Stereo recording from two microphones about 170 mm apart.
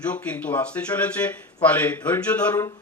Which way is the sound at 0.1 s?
10° left (ahead or behind).